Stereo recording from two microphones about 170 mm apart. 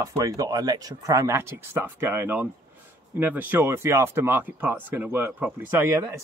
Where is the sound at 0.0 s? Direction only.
20° right (ahead or behind).